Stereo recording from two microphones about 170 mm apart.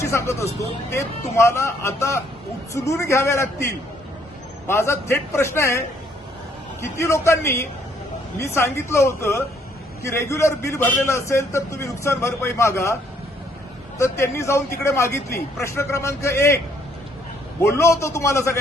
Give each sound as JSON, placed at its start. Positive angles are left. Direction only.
{"t": 0.0, "sound": "a man's voice", "side_deg": 15}
{"t": 6.8, "sound": "a man's voice", "side_deg": 15}
{"t": 14.0, "sound": "a man's voice", "side_deg": 15}
{"t": 17.6, "sound": "a man's voice", "side_deg": 15}